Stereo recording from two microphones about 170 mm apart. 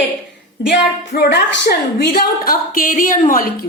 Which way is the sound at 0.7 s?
75° left (ahead or behind).